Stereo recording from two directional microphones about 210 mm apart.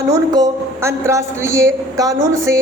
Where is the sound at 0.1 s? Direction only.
15° right (ahead or behind).